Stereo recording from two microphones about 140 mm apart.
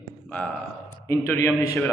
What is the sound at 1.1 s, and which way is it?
Speech, 15° left (ahead or behind).